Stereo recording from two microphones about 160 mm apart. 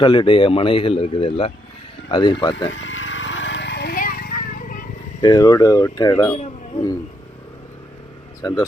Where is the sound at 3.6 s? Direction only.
90° left; by 4.8 s 60° left (ahead or behind).